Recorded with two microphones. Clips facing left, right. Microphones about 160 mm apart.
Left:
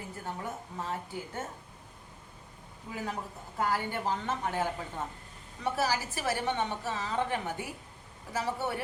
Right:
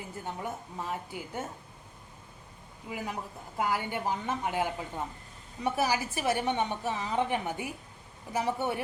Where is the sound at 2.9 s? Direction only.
10° right (ahead or behind).